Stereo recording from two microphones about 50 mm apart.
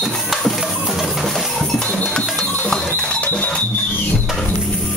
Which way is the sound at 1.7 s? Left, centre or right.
Centre.